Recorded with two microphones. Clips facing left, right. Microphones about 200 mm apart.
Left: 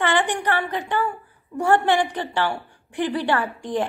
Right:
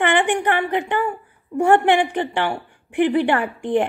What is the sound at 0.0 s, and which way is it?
A woman's voice, 15° right (ahead or behind).